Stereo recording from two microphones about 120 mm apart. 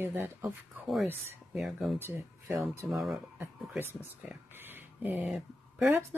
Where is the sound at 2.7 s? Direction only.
25° right (ahead or behind).